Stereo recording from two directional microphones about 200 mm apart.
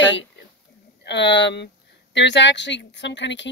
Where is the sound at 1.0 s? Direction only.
60° left (ahead or behind).